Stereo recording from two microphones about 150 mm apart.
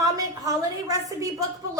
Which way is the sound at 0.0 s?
25° right (ahead or behind).